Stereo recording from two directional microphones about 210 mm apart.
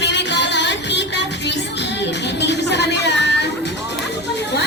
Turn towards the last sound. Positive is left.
turn(degrees=55)  # may be behind; listen again after turning